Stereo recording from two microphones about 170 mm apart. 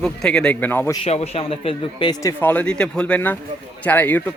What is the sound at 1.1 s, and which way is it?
Speech, 35° left (ahead or behind).